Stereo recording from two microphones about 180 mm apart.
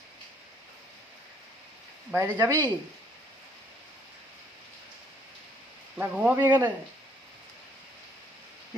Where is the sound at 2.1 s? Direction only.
15° right (ahead or behind).